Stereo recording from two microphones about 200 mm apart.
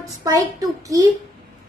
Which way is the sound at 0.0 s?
20° right (ahead or behind).